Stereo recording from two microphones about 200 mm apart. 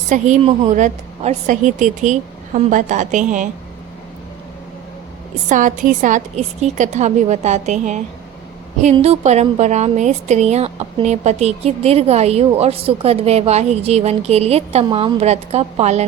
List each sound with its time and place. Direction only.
0.1 s a woman's voice: 35° right (ahead or behind)
5.5 s a woman's voice: 40° right (ahead or behind)